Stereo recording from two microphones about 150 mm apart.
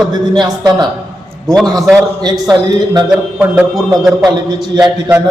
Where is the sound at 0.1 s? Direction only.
25° right (ahead or behind).